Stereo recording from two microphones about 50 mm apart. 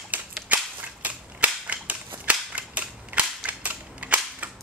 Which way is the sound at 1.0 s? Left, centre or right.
Right.